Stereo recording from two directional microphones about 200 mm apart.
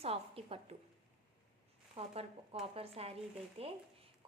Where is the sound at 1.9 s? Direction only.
30° right (ahead or behind).